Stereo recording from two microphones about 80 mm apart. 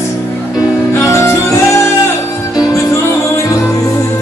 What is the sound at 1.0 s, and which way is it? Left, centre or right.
Music, left.